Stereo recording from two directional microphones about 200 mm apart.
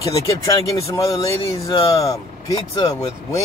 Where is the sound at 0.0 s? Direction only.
15° left (ahead or behind).